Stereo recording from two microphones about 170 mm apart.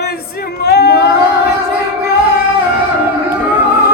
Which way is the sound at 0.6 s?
70° left (ahead or behind).